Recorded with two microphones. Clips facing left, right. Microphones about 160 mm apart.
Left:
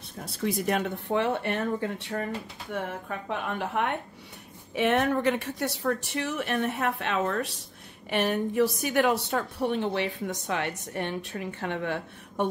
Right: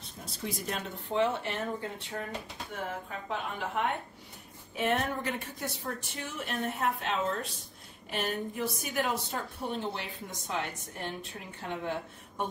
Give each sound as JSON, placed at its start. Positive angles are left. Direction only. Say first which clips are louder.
{"t": 0.4, "sound": "a woman's voice", "louder": "left 9 dB", "side_deg": 65}